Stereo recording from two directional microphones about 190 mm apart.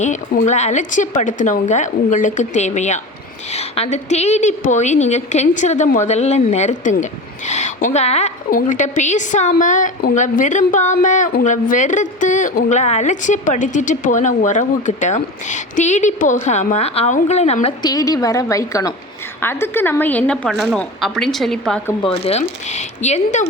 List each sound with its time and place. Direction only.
0.0 s a woman's voice: 40° left (ahead or behind)
17.8 s a woman's voice: 20° left (ahead or behind); by 21.9 s 5° left (ahead or behind)
22.0 s a woman's voice: 30° left (ahead or behind)